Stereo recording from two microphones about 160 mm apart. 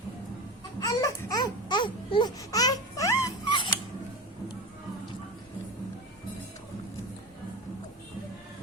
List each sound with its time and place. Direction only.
0.8 s baby cry: 20° left (ahead or behind)
3.2 s cat: 30° left (ahead or behind)